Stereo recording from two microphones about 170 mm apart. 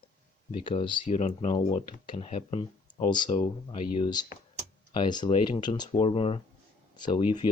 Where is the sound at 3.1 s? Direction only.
25° left (ahead or behind).